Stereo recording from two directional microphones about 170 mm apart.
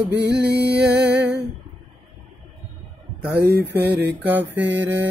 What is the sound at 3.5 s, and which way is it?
Music, 80° right.